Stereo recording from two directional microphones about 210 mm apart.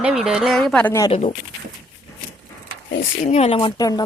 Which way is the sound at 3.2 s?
30° left (ahead or behind).